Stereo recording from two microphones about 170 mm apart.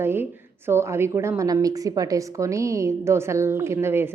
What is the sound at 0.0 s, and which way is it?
A woman's voice, 15° right (ahead or behind).